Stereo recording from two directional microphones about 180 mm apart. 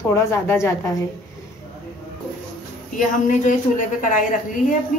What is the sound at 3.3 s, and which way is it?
Speech, 45° left (ahead or behind).